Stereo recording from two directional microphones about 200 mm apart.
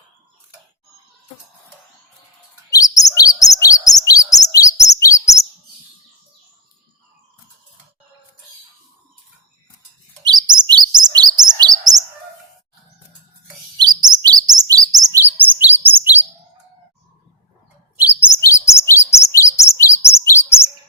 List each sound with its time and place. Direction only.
2.6 s chirp: 15° left (ahead or behind)
10.2 s chirp: 20° right (ahead or behind)
13.7 s chirp: 20° right (ahead or behind)
17.9 s chirp: 10° right (ahead or behind)
18.3 s chirp: 15° left (ahead or behind)